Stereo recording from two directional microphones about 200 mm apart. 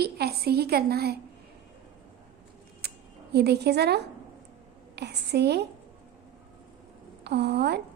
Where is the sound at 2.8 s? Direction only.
55° right (ahead or behind).